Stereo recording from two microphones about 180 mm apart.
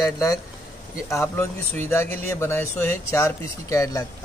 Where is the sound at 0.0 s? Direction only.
20° left (ahead or behind).